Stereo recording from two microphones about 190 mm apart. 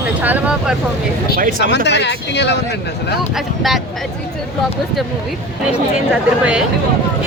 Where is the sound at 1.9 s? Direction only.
65° left (ahead or behind).